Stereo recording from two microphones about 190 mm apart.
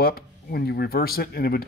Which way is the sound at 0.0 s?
55° left (ahead or behind).